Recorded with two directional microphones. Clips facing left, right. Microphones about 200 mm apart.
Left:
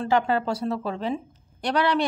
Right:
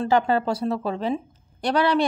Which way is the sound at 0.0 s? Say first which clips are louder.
Right 2 dB; 30° right (ahead or behind).